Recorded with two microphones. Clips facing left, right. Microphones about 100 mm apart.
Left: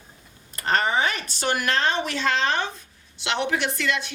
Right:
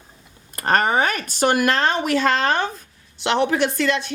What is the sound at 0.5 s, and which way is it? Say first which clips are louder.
Speech: right 4 dB; 50° right (ahead or behind).